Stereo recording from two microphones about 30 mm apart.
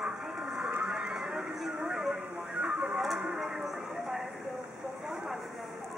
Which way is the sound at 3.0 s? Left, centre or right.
Centre.